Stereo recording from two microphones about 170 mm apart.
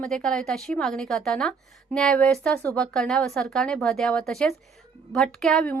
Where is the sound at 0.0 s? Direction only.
5° left (ahead or behind).